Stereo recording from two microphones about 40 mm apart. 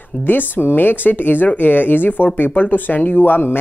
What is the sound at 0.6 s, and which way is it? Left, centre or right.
Speech, left.